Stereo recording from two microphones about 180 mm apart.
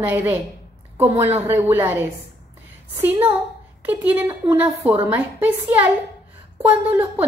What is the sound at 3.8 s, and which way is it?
A woman's voice, 10° right (ahead or behind).